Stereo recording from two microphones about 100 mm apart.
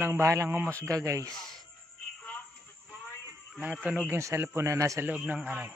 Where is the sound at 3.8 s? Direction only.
15° right (ahead or behind).